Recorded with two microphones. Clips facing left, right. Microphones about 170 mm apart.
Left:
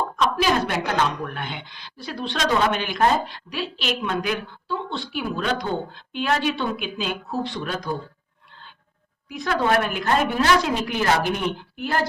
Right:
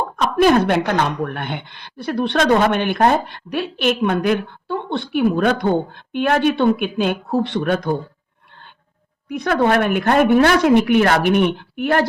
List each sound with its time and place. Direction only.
0.0 s a woman's voice: 55° right (ahead or behind)
9.4 s a woman's voice: 60° right (ahead or behind)